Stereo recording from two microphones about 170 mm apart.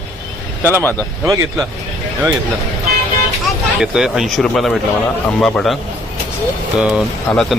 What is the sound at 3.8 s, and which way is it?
Speech, 5° right (ahead or behind).